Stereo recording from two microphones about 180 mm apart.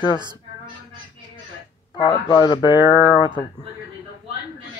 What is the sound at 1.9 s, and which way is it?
Speech, 25° left (ahead or behind).